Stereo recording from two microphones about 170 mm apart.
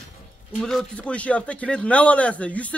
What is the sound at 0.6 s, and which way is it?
A man's voice, 5° left (ahead or behind).